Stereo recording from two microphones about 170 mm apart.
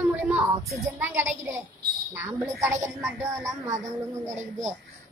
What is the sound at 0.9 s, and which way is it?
A woman's voice, 15° right (ahead or behind).